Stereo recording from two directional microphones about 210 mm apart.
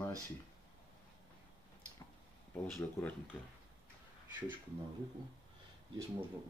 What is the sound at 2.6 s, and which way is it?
Speech, 10° left (ahead or behind).